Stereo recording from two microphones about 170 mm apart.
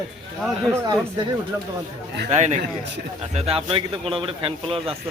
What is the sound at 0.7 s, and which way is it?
Speech, 15° right (ahead or behind).